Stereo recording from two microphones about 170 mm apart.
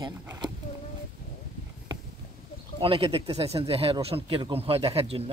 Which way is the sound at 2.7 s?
30° right (ahead or behind).